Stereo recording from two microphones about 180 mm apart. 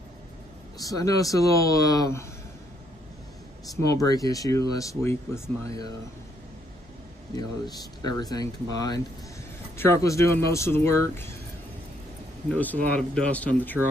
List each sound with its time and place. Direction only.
0.7 s speech: 20° left (ahead or behind)
3.7 s speech: 20° left (ahead or behind)
7.3 s speech: 20° left (ahead or behind)
12.4 s speech: 10° left (ahead or behind)